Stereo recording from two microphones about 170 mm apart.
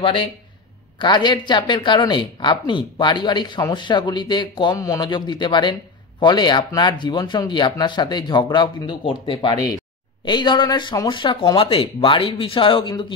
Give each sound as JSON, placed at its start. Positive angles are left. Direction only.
{"t": 0.0, "sound": "speech", "side_deg": 30}